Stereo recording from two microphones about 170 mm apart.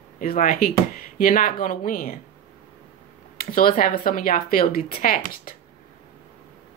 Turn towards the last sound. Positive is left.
turn(degrees=55)  # may be behind; listen again after turning